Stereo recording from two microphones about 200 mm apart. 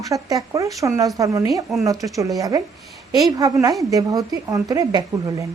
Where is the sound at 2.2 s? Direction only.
15° right (ahead or behind).